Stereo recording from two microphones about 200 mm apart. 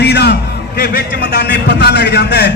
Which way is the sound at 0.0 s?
55° left (ahead or behind).